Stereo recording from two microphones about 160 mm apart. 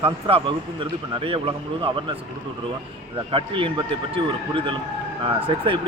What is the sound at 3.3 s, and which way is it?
Speech, 35° right (ahead or behind).